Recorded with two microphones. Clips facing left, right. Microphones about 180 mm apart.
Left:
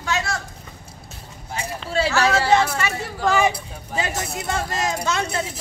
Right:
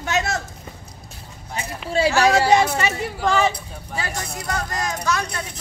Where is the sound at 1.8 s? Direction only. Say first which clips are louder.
Right 3 dB; 15° right (ahead or behind).